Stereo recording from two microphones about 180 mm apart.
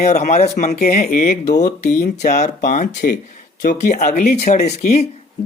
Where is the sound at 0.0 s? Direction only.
40° left (ahead or behind).